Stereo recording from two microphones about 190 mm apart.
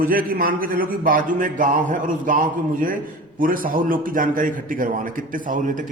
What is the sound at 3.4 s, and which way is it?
A man's voice, 45° right (ahead or behind).